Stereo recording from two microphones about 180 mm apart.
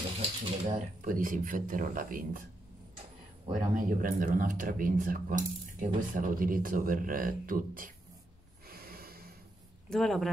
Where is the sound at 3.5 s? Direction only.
50° right (ahead or behind).